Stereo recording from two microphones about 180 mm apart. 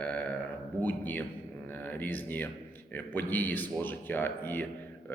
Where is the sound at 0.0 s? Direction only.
10° left (ahead or behind).